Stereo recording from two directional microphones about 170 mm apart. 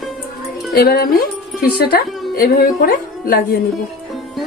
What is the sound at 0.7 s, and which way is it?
A woman's voice, 65° left (ahead or behind).